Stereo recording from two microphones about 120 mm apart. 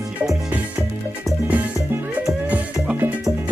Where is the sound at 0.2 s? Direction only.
5° right (ahead or behind).